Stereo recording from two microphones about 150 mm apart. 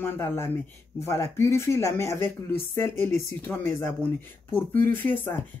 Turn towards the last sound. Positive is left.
turn(degrees=15)  # may be behind; listen again after turning